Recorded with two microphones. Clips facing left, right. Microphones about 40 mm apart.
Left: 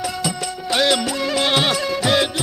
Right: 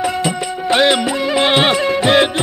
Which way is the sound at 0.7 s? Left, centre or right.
Right.